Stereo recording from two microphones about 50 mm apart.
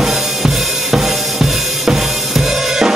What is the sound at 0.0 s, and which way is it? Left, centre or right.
Drum kit, centre.